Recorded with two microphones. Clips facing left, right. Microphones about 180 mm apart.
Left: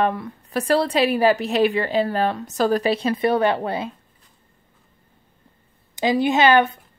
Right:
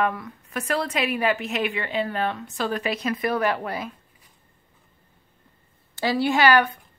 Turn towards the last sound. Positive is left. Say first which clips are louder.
# left 3 dB
turn(degrees=25)  # may be behind; listen again after turning